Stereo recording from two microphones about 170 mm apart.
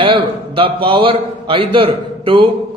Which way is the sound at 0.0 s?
30° right (ahead or behind).